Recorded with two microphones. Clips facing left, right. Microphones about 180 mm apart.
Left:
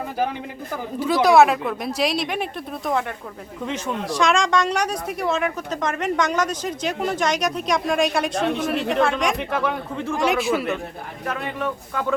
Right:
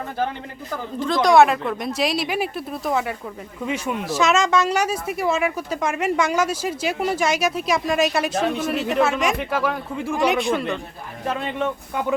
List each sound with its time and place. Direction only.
0.9 s speech: 10° left (ahead or behind)
11.3 s speech: 25° right (ahead or behind)